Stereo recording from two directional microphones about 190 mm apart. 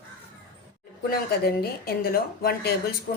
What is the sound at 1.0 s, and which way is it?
Speech, 55° left (ahead or behind).